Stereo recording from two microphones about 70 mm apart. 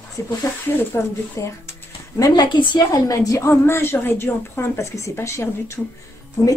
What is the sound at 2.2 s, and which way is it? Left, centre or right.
Speech, left.